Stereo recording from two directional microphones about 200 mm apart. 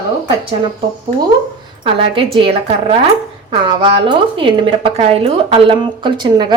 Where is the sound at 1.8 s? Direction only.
25° right (ahead or behind).